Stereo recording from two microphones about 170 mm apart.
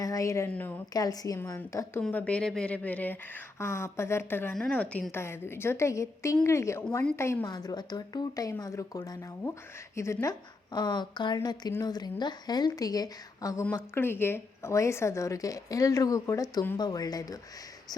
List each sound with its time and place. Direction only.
0.0 s a woman's voice: 20° left (ahead or behind)
0.9 s a woman's voice: 20° left (ahead or behind)